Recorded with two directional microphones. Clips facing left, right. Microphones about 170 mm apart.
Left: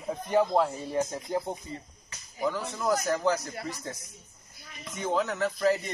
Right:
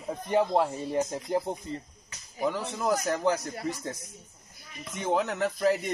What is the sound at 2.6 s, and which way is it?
Speech, 20° right (ahead or behind).